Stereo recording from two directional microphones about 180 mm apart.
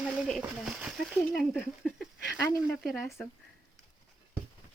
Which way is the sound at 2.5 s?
15° left (ahead or behind).